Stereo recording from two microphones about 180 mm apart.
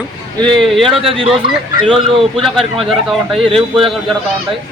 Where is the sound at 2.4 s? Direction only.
Centre (ahead or behind).